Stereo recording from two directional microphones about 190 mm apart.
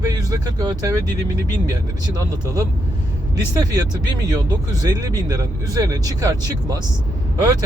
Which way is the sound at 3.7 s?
20° right (ahead or behind).